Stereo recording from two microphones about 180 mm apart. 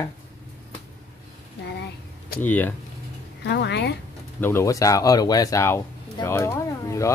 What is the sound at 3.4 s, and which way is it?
Speech, 70° left (ahead or behind).